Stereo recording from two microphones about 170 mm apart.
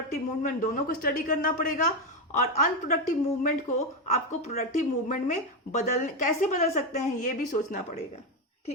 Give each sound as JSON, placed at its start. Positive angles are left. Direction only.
{"t": 0.1, "sound": "speech", "side_deg": 55}